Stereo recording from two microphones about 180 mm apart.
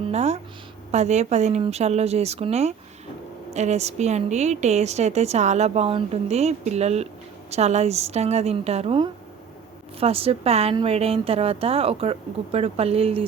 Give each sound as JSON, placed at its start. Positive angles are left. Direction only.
{"t": 0.0, "sound": "speech", "side_deg": -35}